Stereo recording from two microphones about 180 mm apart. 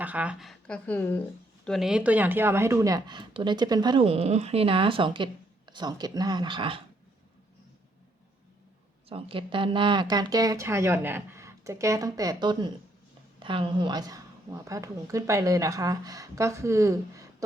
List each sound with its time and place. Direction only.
0.0 s speech: 10° right (ahead or behind); by 6.8 s 30° right (ahead or behind)
9.0 s speech: 30° right (ahead or behind)